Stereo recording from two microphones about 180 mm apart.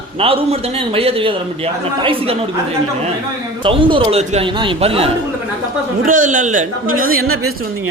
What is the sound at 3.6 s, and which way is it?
A man's voice, 30° right (ahead or behind).